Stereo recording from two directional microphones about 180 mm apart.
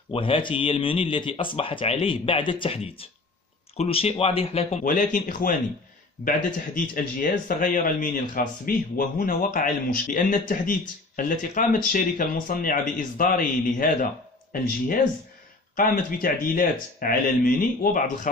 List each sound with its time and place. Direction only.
0.1 s speech: 30° left (ahead or behind)
4.8 s speech: 50° left (ahead or behind)
15.7 s speech: 50° left (ahead or behind)